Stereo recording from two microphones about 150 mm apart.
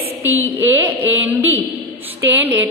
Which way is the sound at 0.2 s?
15° right (ahead or behind).